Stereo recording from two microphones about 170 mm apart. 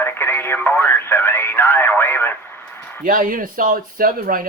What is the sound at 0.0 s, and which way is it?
Radio, 15° left (ahead or behind).